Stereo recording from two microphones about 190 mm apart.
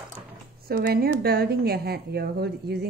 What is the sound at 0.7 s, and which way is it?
A woman's voice, 55° right (ahead or behind).